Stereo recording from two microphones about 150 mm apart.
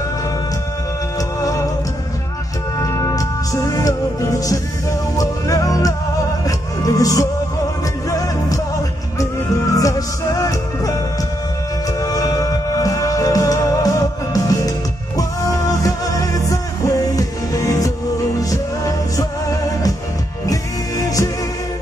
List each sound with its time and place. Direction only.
1.4 s music: 20° left (ahead or behind)
2.8 s music: 20° left (ahead or behind)
9.8 s music: 25° left (ahead or behind)
12.0 s music: 25° left (ahead or behind)
15.7 s music: 25° left (ahead or behind)
21.0 s music: 20° left (ahead or behind)